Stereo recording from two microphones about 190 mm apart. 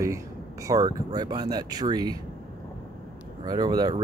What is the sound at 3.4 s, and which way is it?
Speech, 20° right (ahead or behind).